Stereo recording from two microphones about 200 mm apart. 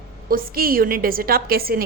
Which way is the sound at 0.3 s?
45° right (ahead or behind).